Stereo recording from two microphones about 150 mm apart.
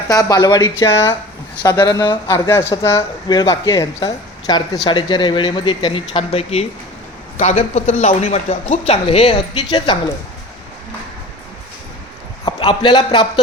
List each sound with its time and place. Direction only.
0.1 s speech: 25° left (ahead or behind)
12.5 s a man's voice: 35° left (ahead or behind)